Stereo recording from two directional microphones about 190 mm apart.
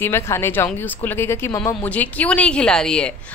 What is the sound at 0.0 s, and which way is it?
A woman's voice, 15° left (ahead or behind).